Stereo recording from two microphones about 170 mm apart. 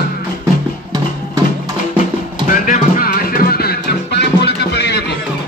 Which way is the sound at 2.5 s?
55° left (ahead or behind).